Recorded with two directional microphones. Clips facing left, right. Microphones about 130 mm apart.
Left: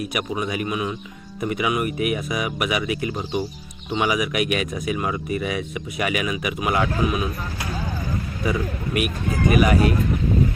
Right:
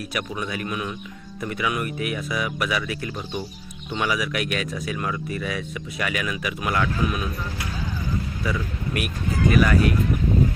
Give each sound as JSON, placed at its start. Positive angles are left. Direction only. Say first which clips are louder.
{"t": 0.0, "sound": "speech", "louder": "left 4 dB", "side_deg": 20}
{"t": 8.4, "sound": "speech", "louder": "left 6 dB", "side_deg": 15}